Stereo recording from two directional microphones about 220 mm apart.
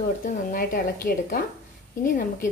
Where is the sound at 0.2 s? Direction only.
40° left (ahead or behind).